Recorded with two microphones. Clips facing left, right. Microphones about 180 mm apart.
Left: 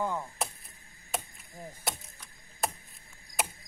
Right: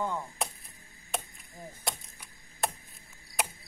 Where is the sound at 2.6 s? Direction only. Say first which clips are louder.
Even; centre (ahead or behind).